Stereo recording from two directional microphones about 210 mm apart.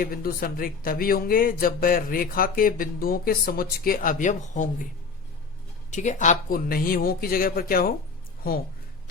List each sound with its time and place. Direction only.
0.0 s speech: 45° left (ahead or behind)
5.9 s speech: 35° left (ahead or behind)